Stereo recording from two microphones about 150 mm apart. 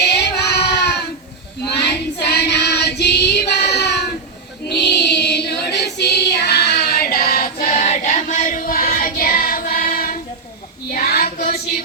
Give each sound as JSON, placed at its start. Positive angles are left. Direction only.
{"t": 0.0, "sound": "child singing", "side_deg": 90}
{"t": 7.0, "sound": "choir", "side_deg": 90}
{"t": 10.9, "sound": "child singing", "side_deg": 85}